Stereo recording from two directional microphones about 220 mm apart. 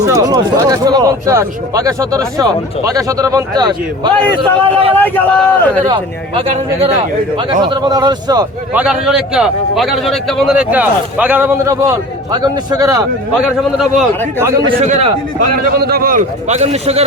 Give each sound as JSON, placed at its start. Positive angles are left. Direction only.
{"t": 0.0, "sound": "speech", "side_deg": -15}
{"t": 4.9, "sound": "a man's voice", "side_deg": 10}
{"t": 5.8, "sound": "speech", "side_deg": -20}
{"t": 8.7, "sound": "a man's voice", "side_deg": -5}
{"t": 13.6, "sound": "a man's voice", "side_deg": 0}
{"t": 14.8, "sound": "a man's voice", "side_deg": -30}